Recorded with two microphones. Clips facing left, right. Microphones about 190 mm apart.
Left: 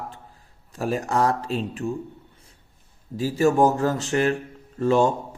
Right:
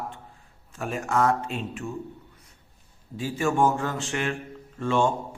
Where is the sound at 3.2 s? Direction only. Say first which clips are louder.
Left 5 dB; 40° left (ahead or behind).